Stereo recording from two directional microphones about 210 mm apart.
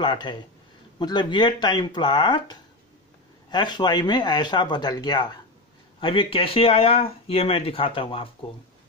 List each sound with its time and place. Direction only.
0.0 s speech: 20° left (ahead or behind)